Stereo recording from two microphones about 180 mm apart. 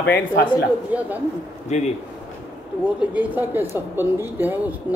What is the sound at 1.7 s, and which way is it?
Speech, 40° left (ahead or behind).